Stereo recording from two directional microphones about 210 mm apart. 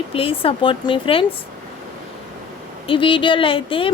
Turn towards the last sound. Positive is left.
turn(degrees=25)  # may be behind; listen again after turning